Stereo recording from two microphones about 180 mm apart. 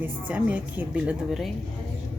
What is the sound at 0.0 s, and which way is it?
A woman's voice, 10° right (ahead or behind).